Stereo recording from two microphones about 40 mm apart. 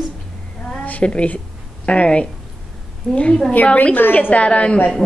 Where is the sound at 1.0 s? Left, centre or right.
Left.